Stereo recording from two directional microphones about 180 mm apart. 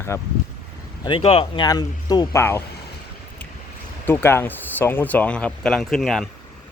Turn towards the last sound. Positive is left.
turn(degrees=0)  # may be behind; listen again after turning